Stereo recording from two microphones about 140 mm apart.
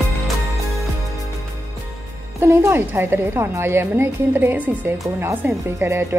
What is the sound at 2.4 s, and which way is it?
Speech, 20° right (ahead or behind).